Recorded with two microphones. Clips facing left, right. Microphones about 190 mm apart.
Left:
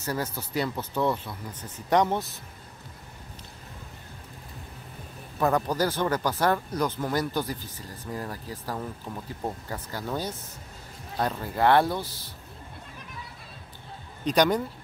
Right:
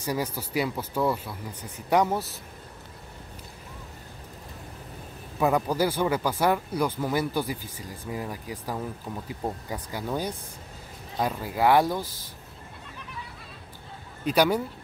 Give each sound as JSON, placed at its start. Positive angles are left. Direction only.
{"t": 0.0, "sound": "speech", "side_deg": -10}
{"t": 5.4, "sound": "speech", "side_deg": -10}
{"t": 14.2, "sound": "speech", "side_deg": -5}